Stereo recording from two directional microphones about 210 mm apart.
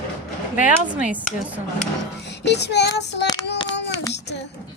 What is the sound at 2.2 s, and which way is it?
Child singing, 55° left (ahead or behind).